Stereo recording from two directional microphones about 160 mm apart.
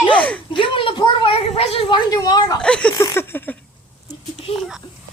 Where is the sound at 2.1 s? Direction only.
25° left (ahead or behind).